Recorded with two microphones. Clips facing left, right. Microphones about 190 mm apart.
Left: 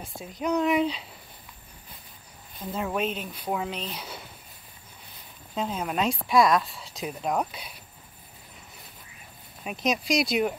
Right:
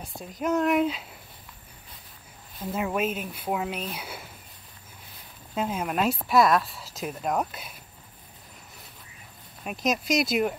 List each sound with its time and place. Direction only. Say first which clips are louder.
0.0 s speech: right 1 dB; centre (ahead or behind)
2.6 s speech: right 1 dB; 5° right (ahead or behind)
5.5 s speech: right 1 dB; 5° right (ahead or behind)
9.6 s speech: even; centre (ahead or behind)